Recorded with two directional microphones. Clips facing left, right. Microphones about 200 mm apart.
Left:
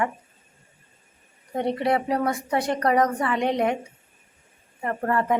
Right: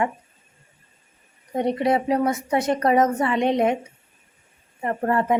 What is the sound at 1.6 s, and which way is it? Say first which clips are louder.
A woman's voice: right 2 dB; 20° right (ahead or behind).